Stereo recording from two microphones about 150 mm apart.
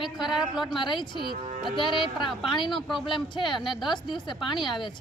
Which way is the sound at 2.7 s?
Centre (ahead or behind).